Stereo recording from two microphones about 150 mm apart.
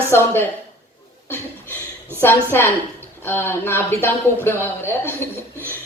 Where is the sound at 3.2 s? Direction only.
15° left (ahead or behind).